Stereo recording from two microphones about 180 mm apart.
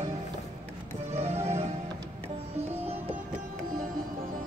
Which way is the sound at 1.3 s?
35° right (ahead or behind).